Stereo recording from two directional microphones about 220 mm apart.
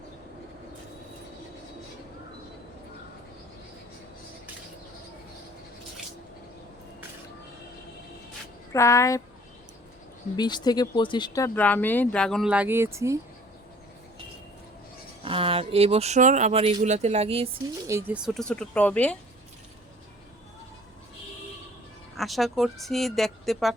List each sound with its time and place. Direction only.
8.7 s speech: 15° left (ahead or behind)
10.3 s speech: 20° left (ahead or behind); by 13.1 s 15° right (ahead or behind)
15.2 s speech: 25° right (ahead or behind)
17.8 s speech: 15° right (ahead or behind)
18.3 s speech: 5° left (ahead or behind)
22.1 s speech: centre (ahead or behind)